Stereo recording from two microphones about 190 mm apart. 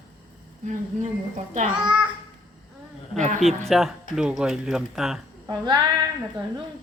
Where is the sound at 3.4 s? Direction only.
Centre (ahead or behind).